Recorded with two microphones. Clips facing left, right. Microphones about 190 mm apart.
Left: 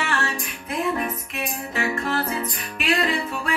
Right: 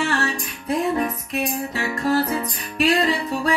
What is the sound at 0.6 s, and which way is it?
Music, 35° right (ahead or behind).